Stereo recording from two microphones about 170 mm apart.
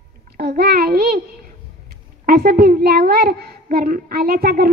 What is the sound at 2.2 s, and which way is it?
A child's voice, 65° right (ahead or behind).